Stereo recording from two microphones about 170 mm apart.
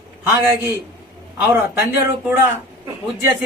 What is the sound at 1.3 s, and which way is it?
Speech, 15° right (ahead or behind).